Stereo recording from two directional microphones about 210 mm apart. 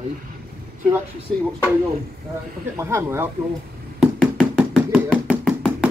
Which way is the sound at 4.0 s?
Centre (ahead or behind).